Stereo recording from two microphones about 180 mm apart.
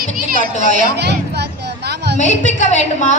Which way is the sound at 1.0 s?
70° right (ahead or behind).